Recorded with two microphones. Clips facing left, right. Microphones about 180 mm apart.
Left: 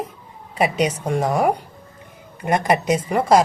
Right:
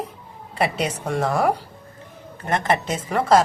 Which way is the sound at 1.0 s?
10° left (ahead or behind).